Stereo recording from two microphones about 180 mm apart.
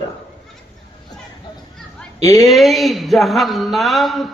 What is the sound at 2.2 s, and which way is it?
Speech, 20° left (ahead or behind).